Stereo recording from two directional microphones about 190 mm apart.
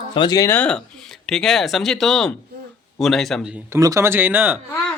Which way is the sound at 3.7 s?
15° right (ahead or behind).